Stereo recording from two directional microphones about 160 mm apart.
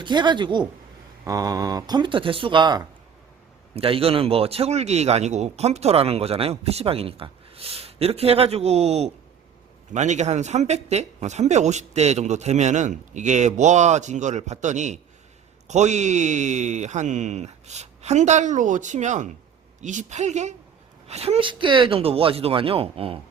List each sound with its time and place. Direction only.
0.0 s a man's voice: 30° right (ahead or behind)